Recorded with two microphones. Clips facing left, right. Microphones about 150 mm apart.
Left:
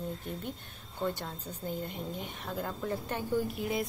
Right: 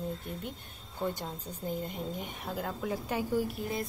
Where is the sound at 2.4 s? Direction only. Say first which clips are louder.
Even; 10° right (ahead or behind).